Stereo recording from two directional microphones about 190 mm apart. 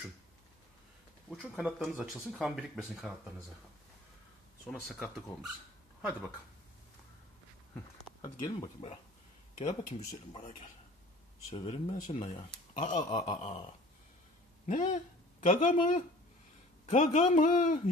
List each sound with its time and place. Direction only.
1.3 s speech: centre (ahead or behind)
4.6 s speech: 5° left (ahead or behind)
8.5 s speech: 25° left (ahead or behind)
11.5 s speech: 30° left (ahead or behind)
14.7 s speech: 40° left (ahead or behind)